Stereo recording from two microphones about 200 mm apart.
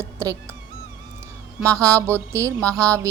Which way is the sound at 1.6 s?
15° right (ahead or behind).